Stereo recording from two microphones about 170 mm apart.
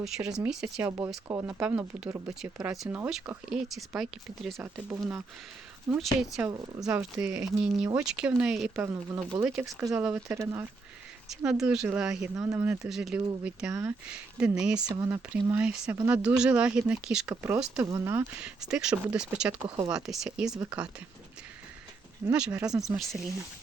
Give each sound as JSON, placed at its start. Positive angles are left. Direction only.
{"t": 0.0, "sound": "speech", "side_deg": -5}
{"t": 2.6, "sound": "speech", "side_deg": -5}
{"t": 4.5, "sound": "speech", "side_deg": -15}
{"t": 6.0, "sound": "speech", "side_deg": 0}
{"t": 11.3, "sound": "speech", "side_deg": -5}
{"t": 12.8, "sound": "speech", "side_deg": -5}
{"t": 14.8, "sound": "speech", "side_deg": -20}
{"t": 19.6, "sound": "speech", "side_deg": -25}
{"t": 19.9, "sound": "speech", "side_deg": -5}
{"t": 22.3, "sound": "speech", "side_deg": -5}